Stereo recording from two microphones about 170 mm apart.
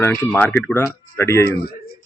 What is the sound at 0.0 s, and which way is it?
Speech, 10° left (ahead or behind).